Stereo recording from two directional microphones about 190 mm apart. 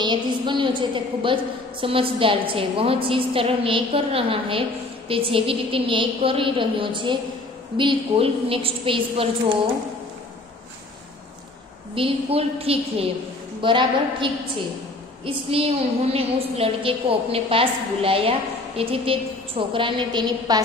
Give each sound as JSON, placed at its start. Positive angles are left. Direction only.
{"t": 0.0, "sound": "a woman's voice", "side_deg": -25}
{"t": 11.9, "sound": "a woman's voice", "side_deg": -30}